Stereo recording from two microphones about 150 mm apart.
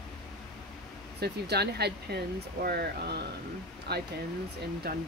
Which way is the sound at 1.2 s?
90° right.